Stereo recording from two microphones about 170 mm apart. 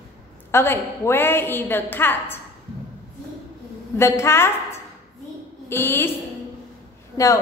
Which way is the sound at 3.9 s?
15° left (ahead or behind).